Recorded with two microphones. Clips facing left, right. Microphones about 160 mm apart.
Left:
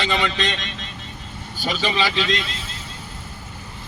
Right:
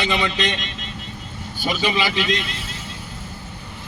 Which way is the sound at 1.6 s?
15° right (ahead or behind).